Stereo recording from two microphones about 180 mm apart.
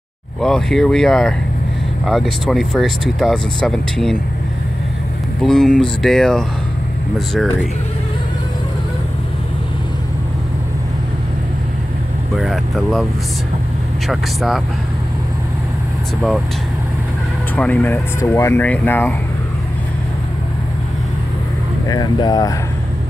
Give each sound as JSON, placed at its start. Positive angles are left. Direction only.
{"t": 0.4, "sound": "speech", "side_deg": 5}
{"t": 5.4, "sound": "speech", "side_deg": 5}
{"t": 12.4, "sound": "speech", "side_deg": 0}
{"t": 14.0, "sound": "speech", "side_deg": 0}
{"t": 17.6, "sound": "speech", "side_deg": 10}
{"t": 21.8, "sound": "speech", "side_deg": 20}